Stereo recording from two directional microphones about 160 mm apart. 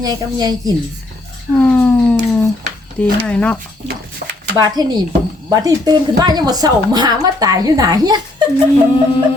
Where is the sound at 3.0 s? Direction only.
10° left (ahead or behind).